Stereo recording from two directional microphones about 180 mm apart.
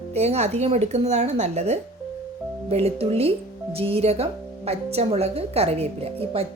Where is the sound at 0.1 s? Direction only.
35° right (ahead or behind).